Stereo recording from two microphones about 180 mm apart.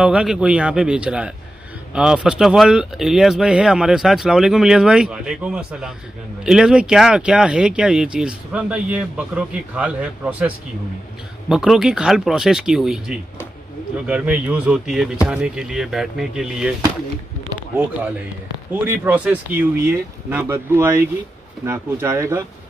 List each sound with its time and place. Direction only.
0.0 s speech: 5° right (ahead or behind)
18.7 s speech: 10° right (ahead or behind)